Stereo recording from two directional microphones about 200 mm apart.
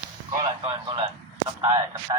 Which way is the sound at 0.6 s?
25° right (ahead or behind).